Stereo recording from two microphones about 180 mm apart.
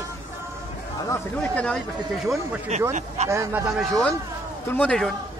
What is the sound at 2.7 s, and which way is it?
Speech, 35° right (ahead or behind).